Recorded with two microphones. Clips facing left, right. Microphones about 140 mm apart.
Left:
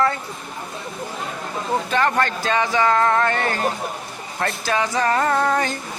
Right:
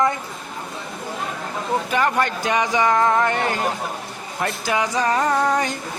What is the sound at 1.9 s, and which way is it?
Speech, 10° right (ahead or behind).